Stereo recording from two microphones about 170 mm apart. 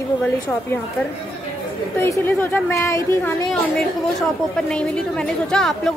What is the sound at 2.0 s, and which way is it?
A woman's voice, 10° left (ahead or behind).